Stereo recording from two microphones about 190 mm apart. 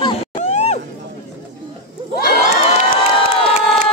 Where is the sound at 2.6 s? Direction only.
35° left (ahead or behind).